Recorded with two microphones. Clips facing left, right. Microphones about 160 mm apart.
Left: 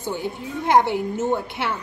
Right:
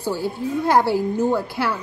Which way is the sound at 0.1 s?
20° left (ahead or behind).